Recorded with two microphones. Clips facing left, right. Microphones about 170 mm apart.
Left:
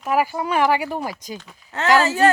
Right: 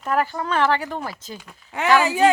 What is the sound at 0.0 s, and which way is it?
Speech, 10° left (ahead or behind).